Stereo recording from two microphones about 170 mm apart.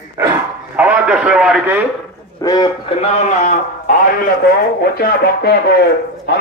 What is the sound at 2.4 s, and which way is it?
A man's voice, 25° left (ahead or behind).